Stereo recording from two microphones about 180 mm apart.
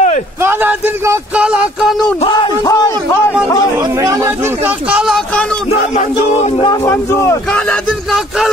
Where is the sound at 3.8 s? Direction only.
15° right (ahead or behind); by 5.6 s 5° left (ahead or behind).